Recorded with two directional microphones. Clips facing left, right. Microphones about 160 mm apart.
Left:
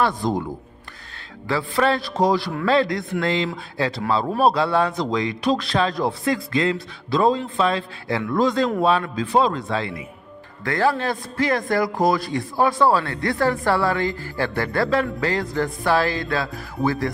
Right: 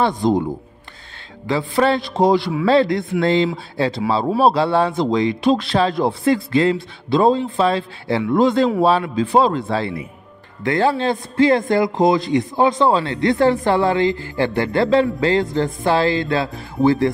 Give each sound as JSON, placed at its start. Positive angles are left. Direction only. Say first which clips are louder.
{"t": 0.0, "sound": "a man's voice", "louder": "right 4 dB", "side_deg": -20}
{"t": 1.5, "sound": "a man's voice", "louder": "right 3 dB", "side_deg": -25}